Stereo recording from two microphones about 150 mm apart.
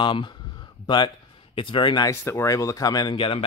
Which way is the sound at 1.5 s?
35° left (ahead or behind).